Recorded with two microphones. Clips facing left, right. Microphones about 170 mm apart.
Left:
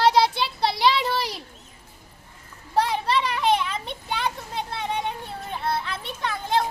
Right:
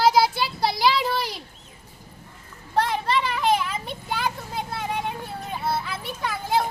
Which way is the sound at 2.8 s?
Centre (ahead or behind).